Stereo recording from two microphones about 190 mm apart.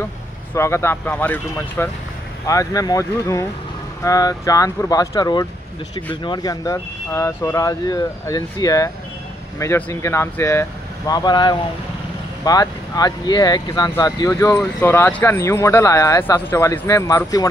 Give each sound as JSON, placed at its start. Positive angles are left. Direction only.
{"t": 0.6, "sound": "speech", "side_deg": 15}